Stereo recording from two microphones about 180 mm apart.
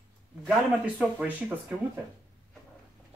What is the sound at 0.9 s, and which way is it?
Speech, 10° right (ahead or behind).